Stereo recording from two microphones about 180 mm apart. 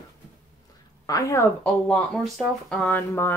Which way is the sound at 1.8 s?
5° left (ahead or behind).